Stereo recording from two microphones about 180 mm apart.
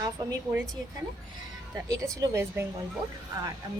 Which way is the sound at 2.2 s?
15° right (ahead or behind).